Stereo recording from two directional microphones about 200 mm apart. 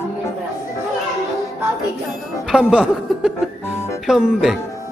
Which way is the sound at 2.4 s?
Centre (ahead or behind).